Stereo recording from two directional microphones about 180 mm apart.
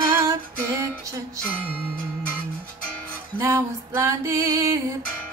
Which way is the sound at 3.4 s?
15° right (ahead or behind).